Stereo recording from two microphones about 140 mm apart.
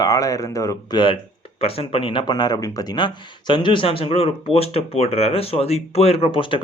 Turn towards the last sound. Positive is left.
turn(degrees=40)  # may be behind; listen again after turning